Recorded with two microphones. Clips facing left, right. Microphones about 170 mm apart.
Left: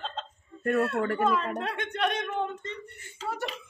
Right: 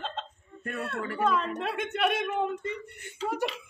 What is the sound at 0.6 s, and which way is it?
Speech, 60° left (ahead or behind).